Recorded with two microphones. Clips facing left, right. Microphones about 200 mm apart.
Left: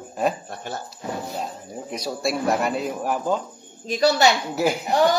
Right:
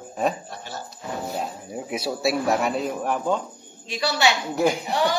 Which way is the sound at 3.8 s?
40° left (ahead or behind).